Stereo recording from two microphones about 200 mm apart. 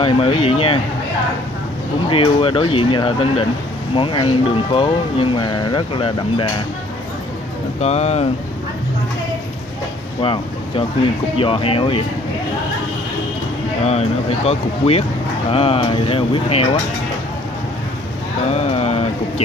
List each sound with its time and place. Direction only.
0.0 s speech: 25° left (ahead or behind)
2.0 s speech: 25° left (ahead or behind)
7.8 s speech: 35° left (ahead or behind)
10.2 s speech: 25° left (ahead or behind)
13.8 s speech: 30° left (ahead or behind)
18.5 s a sound: 30° left (ahead or behind)